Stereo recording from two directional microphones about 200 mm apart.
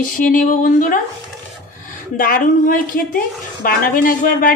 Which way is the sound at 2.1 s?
45° left (ahead or behind).